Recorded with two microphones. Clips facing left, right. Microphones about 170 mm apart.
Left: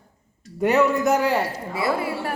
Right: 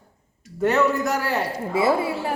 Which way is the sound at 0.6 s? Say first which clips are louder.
Left 1 dB; 10° left (ahead or behind).